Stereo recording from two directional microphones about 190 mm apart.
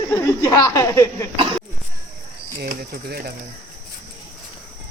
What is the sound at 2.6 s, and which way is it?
Speech, 55° right (ahead or behind).